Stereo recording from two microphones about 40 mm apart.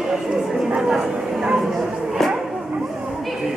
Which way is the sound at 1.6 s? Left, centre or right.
Centre.